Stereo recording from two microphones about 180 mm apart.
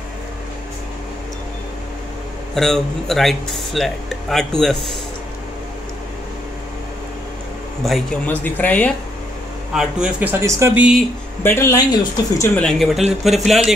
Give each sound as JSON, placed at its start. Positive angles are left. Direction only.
{"t": 2.5, "sound": "speech", "side_deg": 0}
{"t": 7.8, "sound": "a man's voice", "side_deg": 5}
{"t": 9.8, "sound": "a man's voice", "side_deg": -5}
{"t": 11.4, "sound": "a man's voice", "side_deg": 15}
{"t": 12.5, "sound": "speech", "side_deg": 0}